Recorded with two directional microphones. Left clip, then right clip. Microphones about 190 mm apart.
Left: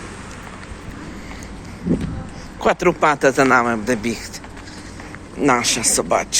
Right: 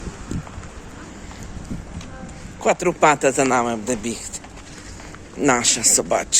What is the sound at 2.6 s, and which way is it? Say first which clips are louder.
Speech: left 1 dB; 10° right (ahead or behind).